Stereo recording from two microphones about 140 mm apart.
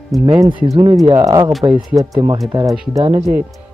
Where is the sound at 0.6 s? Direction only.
40° right (ahead or behind).